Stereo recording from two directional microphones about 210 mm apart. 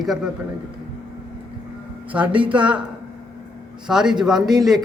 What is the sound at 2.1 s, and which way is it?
Speech, 5° right (ahead or behind).